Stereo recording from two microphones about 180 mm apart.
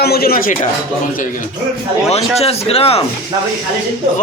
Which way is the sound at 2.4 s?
35° left (ahead or behind).